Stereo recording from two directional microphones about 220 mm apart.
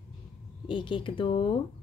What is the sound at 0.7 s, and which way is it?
Speech, 20° left (ahead or behind).